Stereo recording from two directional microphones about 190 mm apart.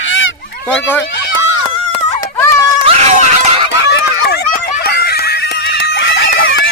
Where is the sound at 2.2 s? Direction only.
15° left (ahead or behind).